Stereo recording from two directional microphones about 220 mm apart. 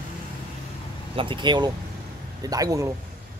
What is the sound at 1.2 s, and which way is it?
A man's voice, 20° right (ahead or behind).